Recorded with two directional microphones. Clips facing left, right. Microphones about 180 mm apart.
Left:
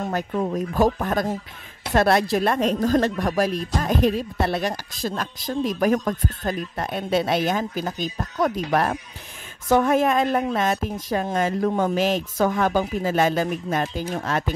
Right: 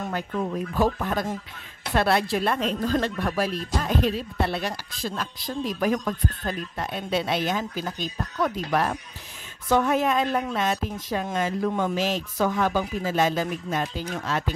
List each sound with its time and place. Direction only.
0.1 s speech: 40° left (ahead or behind)